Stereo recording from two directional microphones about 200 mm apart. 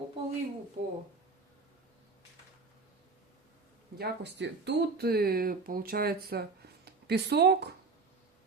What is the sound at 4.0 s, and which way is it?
Speech, 60° right (ahead or behind).